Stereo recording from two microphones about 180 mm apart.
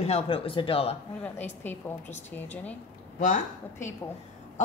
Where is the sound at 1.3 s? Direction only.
10° left (ahead or behind).